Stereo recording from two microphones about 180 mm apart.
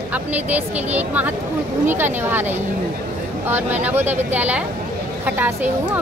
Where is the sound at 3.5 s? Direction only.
10° right (ahead or behind).